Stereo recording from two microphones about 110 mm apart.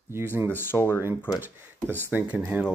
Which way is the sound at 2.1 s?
15° right (ahead or behind).